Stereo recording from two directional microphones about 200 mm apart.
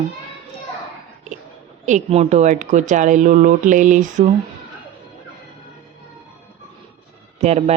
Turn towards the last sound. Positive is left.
turn(degrees=-30)  # may be behind; listen again after turning